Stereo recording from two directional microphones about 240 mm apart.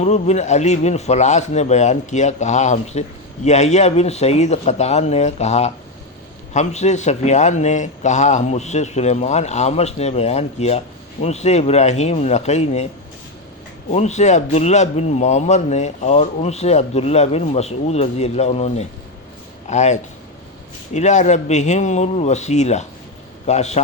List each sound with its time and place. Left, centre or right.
0.0 s a man's voice: left
13.9 s a man's voice: left